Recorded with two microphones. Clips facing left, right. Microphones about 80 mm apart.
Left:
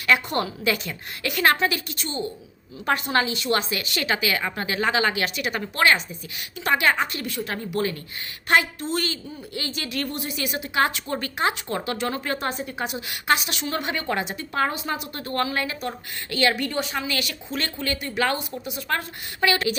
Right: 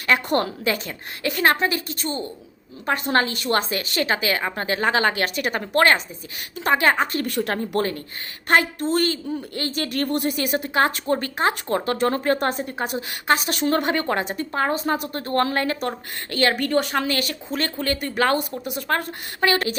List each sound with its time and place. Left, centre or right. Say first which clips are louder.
0.1 s speech: right 2 dB; right
7.3 s a woman's voice: right 5 dB; right
18.9 s speech: right 3 dB; right